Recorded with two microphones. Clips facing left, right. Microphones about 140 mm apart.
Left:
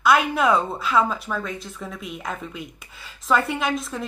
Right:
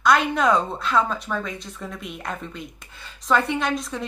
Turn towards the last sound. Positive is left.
turn(degrees=0)  # may be behind; listen again after turning